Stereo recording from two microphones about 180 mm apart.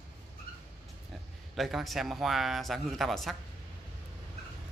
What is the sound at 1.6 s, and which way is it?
A man's voice, centre (ahead or behind).